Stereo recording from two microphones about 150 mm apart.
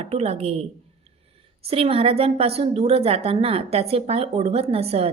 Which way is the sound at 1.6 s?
40° right (ahead or behind).